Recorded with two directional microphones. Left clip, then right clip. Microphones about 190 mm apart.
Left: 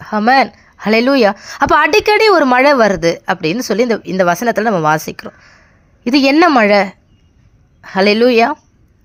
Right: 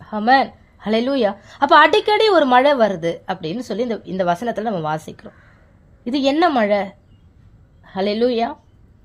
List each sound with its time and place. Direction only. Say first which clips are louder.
0.0 s a woman's voice: left 4 dB; 25° left (ahead or behind)